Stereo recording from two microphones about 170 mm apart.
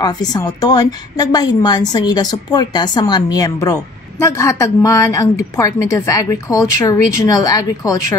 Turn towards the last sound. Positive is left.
turn(degrees=20)  # may be behind; listen again after turning